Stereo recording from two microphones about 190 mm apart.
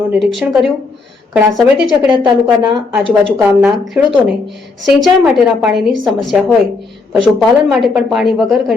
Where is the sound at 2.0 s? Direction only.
25° right (ahead or behind).